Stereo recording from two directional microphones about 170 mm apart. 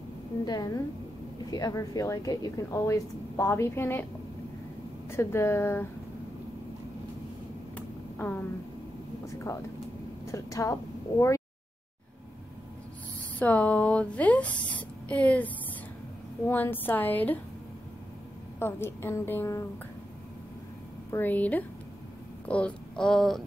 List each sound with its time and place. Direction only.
0.5 s speech: 25° left (ahead or behind)
5.1 s a woman's voice: 15° left (ahead or behind)
7.7 s a sound: 10° left (ahead or behind)
10.2 s a sound: 20° left (ahead or behind)
13.4 s a woman's voice: 10° left (ahead or behind)
18.6 s a woman's voice: 15° left (ahead or behind)
21.1 s a woman's voice: 10° left (ahead or behind)